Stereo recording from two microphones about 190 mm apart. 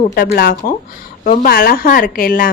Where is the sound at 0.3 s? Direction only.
45° left (ahead or behind).